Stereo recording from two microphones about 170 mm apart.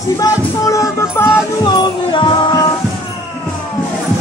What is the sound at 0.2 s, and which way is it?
Music, 20° left (ahead or behind).